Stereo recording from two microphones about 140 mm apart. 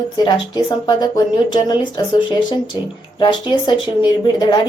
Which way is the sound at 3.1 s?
35° left (ahead or behind).